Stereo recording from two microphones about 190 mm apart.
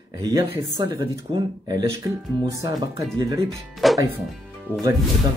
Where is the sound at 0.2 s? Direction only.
15° right (ahead or behind).